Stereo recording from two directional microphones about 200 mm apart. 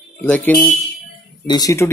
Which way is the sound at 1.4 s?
20° left (ahead or behind).